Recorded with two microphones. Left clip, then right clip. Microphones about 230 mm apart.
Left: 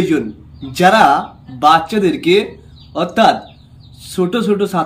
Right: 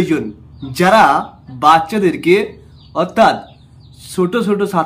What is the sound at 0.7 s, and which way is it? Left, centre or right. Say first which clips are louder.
Speech: even; centre.